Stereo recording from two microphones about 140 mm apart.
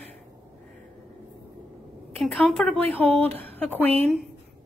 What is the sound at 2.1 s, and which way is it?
Speech, centre (ahead or behind).